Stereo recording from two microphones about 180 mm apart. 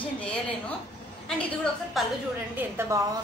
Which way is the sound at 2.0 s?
Centre (ahead or behind).